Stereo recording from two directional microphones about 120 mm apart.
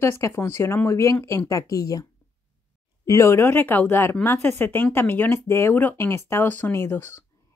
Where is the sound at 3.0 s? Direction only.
25° left (ahead or behind).